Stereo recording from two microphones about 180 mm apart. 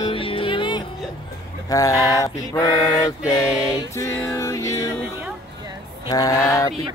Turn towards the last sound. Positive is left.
turn(degrees=20)  # may be behind; listen again after turning